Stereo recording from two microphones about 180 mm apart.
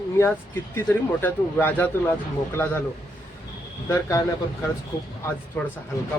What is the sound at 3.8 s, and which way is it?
Speech, 20° left (ahead or behind).